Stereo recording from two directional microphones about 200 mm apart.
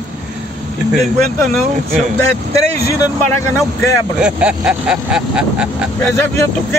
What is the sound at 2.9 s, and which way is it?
Speech, 15° left (ahead or behind).